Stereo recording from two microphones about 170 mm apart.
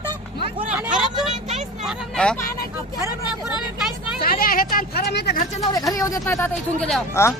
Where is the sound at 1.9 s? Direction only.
5° left (ahead or behind).